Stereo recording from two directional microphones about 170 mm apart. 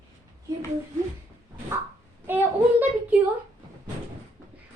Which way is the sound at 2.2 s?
10° right (ahead or behind).